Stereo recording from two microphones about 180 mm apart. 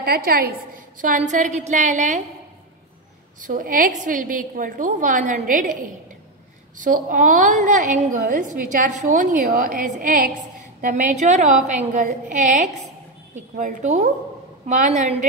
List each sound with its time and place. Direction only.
0.0 s a woman's voice: 55° right (ahead or behind)
1.0 s a woman's voice: 45° right (ahead or behind)
3.3 s a woman's voice: 50° right (ahead or behind)